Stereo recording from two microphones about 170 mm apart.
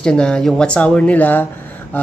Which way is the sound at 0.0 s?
5° left (ahead or behind).